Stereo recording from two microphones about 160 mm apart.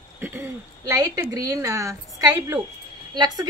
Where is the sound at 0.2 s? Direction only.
10° right (ahead or behind).